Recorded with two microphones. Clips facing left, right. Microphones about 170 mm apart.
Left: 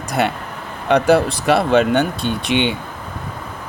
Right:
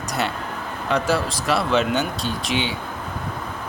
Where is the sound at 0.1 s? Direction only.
60° left (ahead or behind).